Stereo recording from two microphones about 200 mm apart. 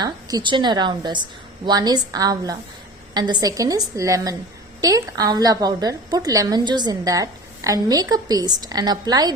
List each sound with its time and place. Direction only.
0.0 s a woman's voice: 20° right (ahead or behind)